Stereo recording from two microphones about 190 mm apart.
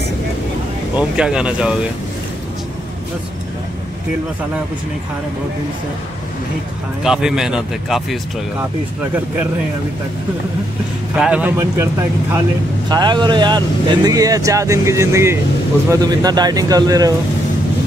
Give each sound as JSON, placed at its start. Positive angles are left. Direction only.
{"t": 0.9, "sound": "speech", "side_deg": -5}
{"t": 7.0, "sound": "speech", "side_deg": -5}
{"t": 11.1, "sound": "speech", "side_deg": -5}
{"t": 12.9, "sound": "speech", "side_deg": -25}